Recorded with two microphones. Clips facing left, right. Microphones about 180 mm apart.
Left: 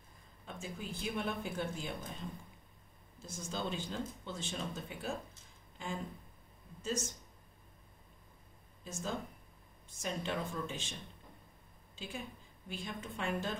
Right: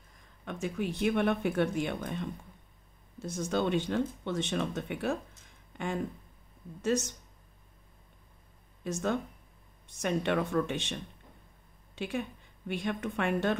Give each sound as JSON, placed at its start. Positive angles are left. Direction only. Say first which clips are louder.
{"t": 0.5, "sound": "speech", "louder": "right 10 dB", "side_deg": -70}
{"t": 5.7, "sound": "a sound", "louder": "right 7 dB", "side_deg": -70}
{"t": 6.8, "sound": "speech", "louder": "right 9 dB", "side_deg": -75}
{"t": 8.8, "sound": "a woman's voice", "louder": "right 9 dB", "side_deg": -70}